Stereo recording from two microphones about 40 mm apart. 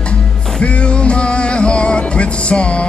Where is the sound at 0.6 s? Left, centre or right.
Left.